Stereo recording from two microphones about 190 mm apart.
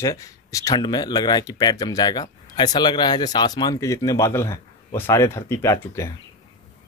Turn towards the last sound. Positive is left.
turn(degrees=15)  # may be behind; listen again after turning